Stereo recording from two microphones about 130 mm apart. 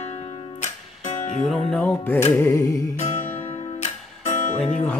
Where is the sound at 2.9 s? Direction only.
60° left (ahead or behind).